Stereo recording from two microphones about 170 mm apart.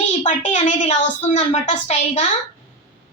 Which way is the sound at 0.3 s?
45° left (ahead or behind).